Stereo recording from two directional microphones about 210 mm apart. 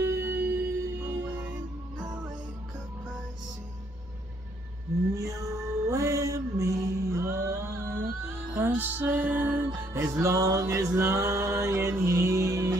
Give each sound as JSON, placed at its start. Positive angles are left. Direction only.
{"t": 0.0, "sound": "music", "side_deg": -10}
{"t": 5.1, "sound": "a sound", "side_deg": -15}
{"t": 5.9, "sound": "mantra", "side_deg": -15}
{"t": 8.5, "sound": "music", "side_deg": -10}